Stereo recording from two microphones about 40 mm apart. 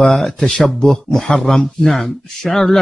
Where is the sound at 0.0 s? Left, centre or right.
Centre.